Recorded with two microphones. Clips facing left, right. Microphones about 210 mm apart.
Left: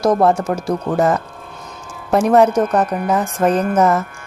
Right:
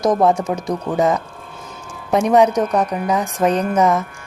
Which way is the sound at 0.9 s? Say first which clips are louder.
Even; centre (ahead or behind).